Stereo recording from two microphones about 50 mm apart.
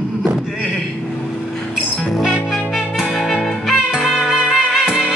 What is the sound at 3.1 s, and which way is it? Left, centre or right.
Music, centre.